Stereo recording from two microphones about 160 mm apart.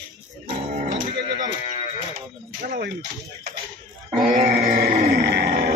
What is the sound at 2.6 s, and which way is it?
Speech, 80° right.